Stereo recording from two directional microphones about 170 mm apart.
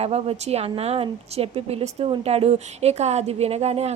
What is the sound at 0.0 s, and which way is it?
Speech, 35° right (ahead or behind).